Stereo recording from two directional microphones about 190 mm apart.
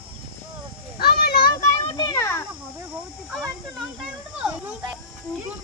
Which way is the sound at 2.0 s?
20° left (ahead or behind).